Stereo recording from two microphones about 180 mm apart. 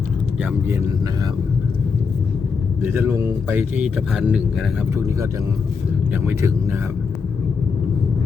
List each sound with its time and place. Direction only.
0.7 s speech: 15° right (ahead or behind)
2.8 s speech: 15° right (ahead or behind)